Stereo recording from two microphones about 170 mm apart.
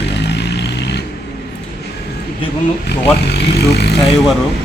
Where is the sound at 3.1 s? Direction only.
75° left (ahead or behind).